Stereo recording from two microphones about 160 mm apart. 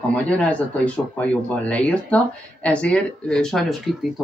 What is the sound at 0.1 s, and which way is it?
Speech, 10° left (ahead or behind).